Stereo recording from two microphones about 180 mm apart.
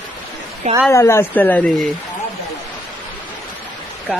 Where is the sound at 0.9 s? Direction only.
15° left (ahead or behind).